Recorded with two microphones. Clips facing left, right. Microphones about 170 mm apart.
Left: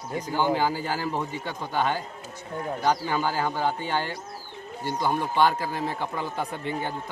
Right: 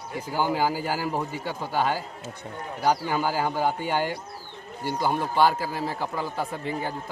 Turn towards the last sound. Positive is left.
turn(degrees=0)  # may be behind; listen again after turning